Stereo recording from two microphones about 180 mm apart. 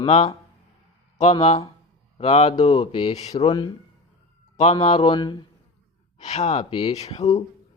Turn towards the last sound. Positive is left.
turn(degrees=35)  # may be behind; listen again after turning